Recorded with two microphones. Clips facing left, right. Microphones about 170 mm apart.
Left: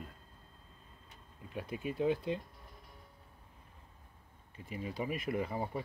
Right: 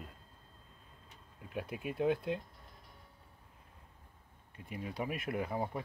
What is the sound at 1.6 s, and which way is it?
Speech, 5° right (ahead or behind).